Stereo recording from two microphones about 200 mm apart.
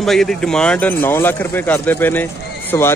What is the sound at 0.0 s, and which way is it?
Speech, centre (ahead or behind).